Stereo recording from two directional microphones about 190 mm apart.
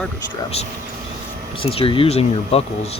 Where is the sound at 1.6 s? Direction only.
30° left (ahead or behind).